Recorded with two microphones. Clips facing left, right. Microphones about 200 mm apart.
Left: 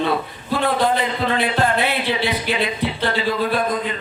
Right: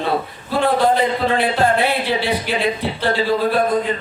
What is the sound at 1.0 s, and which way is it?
Music, 35° right (ahead or behind).